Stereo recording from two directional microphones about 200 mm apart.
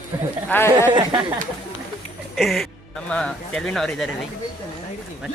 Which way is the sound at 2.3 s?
Centre (ahead or behind).